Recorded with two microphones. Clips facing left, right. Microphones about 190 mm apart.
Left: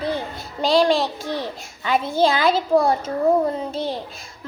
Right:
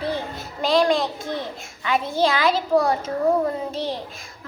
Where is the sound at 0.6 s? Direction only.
30° left (ahead or behind).